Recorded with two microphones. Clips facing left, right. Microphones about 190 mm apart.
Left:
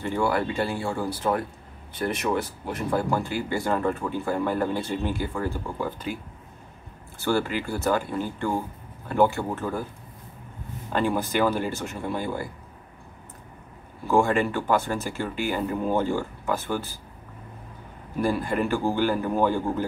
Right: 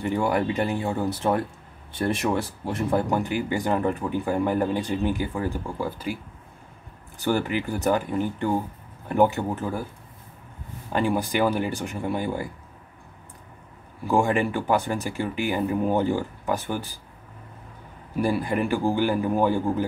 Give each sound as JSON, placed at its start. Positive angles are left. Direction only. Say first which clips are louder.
{"t": 0.0, "sound": "speech", "louder": "right 1 dB", "side_deg": -15}
{"t": 7.2, "sound": "speech", "louder": "right 1 dB", "side_deg": -15}
{"t": 10.9, "sound": "speech", "louder": "right 1 dB", "side_deg": -15}
{"t": 14.0, "sound": "speech", "louder": "even", "side_deg": -15}
{"t": 18.2, "sound": "speech", "louder": "right 1 dB", "side_deg": -15}